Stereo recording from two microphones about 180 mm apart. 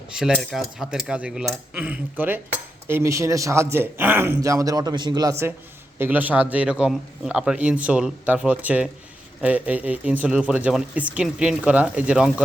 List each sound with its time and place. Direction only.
0.1 s a man's voice: 5° right (ahead or behind)